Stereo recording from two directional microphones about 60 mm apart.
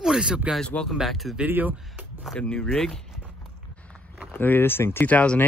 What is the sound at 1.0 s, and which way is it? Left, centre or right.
Speech, centre.